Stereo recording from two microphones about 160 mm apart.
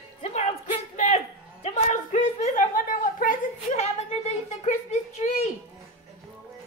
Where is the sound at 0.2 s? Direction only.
40° left (ahead or behind).